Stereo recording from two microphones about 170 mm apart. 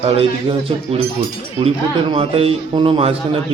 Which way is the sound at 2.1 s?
35° right (ahead or behind).